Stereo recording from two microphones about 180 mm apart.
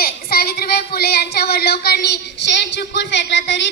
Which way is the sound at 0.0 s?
60° left (ahead or behind).